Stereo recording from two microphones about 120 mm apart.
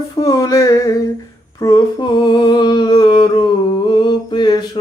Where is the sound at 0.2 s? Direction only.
30° left (ahead or behind).